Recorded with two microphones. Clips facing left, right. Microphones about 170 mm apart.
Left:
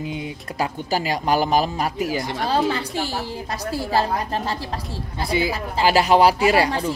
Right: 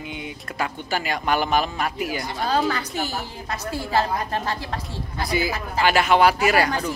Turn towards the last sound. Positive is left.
turn(degrees=30)  # may be behind; listen again after turning